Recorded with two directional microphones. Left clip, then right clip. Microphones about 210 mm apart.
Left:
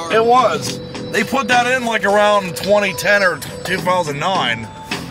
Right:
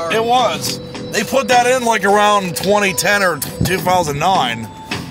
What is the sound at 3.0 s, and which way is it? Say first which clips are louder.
Speech: even; 25° right (ahead or behind).